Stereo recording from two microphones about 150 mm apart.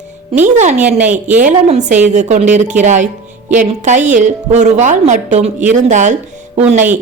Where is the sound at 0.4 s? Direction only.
50° right (ahead or behind).